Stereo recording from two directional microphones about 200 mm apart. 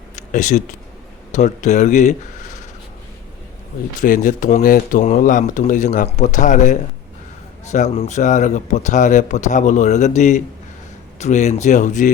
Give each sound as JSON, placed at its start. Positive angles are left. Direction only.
{"t": 0.2, "sound": "speech", "side_deg": 35}
{"t": 4.0, "sound": "speech", "side_deg": 40}